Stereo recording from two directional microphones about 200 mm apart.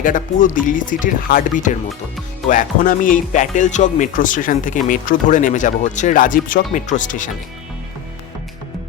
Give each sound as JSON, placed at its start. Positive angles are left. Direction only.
{"t": 0.0, "sound": "speech", "side_deg": 40}